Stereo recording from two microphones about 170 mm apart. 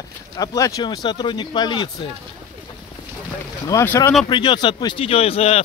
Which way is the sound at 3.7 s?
20° left (ahead or behind).